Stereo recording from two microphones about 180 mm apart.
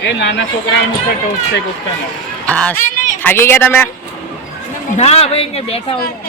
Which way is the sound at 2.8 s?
45° left (ahead or behind).